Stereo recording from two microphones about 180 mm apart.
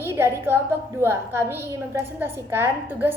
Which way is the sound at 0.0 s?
15° right (ahead or behind).